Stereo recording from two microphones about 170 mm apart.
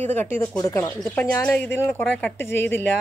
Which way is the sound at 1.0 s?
5° left (ahead or behind).